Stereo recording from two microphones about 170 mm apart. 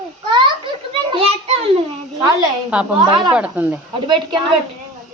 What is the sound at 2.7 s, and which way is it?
Speech, 5° right (ahead or behind).